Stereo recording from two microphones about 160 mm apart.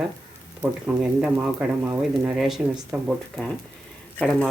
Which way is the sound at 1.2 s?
10° right (ahead or behind).